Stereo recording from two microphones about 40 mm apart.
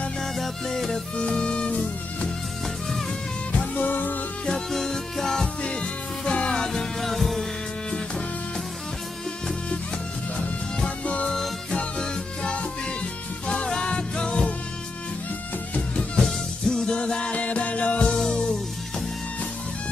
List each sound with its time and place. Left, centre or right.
0.4 s music: centre
1.1 s music: left
3.7 s music: left
4.5 s music: centre
5.6 s music: left
6.6 s music: centre
7.0 s music: centre
11.2 s music: centre
12.0 s music: left
16.2 s music: centre
16.8 s music: left
18.1 s music: centre